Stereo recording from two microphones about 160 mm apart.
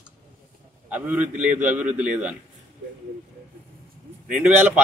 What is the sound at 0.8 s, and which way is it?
Speech, 10° right (ahead or behind).